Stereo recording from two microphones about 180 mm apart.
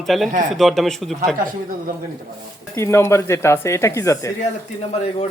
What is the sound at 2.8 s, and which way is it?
Speech, 15° left (ahead or behind).